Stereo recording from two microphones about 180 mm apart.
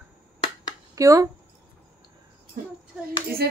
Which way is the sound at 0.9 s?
20° right (ahead or behind).